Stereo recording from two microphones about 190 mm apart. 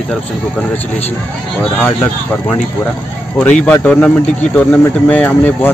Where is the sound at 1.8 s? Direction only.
10° left (ahead or behind).